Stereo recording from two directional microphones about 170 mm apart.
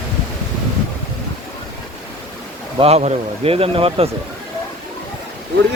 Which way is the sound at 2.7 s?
35° right (ahead or behind).